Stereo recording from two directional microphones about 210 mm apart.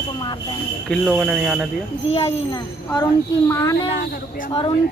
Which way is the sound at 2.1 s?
30° left (ahead or behind).